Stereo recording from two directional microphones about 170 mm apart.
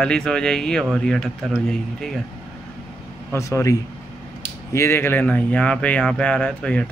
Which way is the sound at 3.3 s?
15° left (ahead or behind).